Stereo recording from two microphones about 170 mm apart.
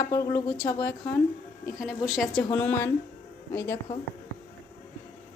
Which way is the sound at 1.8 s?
Centre (ahead or behind).